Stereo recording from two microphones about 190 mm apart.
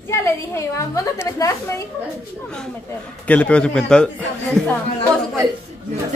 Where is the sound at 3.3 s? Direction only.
5° left (ahead or behind).